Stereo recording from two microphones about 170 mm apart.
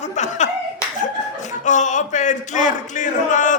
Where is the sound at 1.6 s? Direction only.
45° left (ahead or behind).